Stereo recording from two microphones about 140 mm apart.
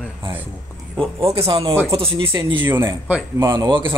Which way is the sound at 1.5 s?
35° right (ahead or behind).